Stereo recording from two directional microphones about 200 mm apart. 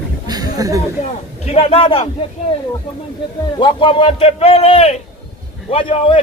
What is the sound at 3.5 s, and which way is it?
A man's voice, 25° left (ahead or behind).